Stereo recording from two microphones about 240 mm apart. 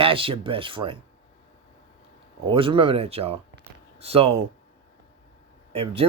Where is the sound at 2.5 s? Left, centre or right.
Right.